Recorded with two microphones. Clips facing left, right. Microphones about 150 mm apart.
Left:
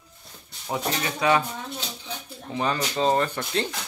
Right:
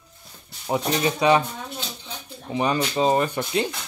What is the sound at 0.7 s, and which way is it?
Speech, 20° right (ahead or behind).